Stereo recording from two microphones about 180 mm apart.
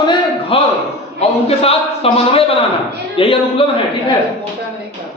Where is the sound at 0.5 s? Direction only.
30° left (ahead or behind).